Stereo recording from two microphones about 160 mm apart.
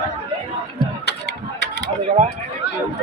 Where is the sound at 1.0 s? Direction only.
90° left.